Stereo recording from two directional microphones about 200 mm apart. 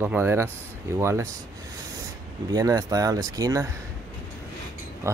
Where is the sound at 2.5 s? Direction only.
15° right (ahead or behind).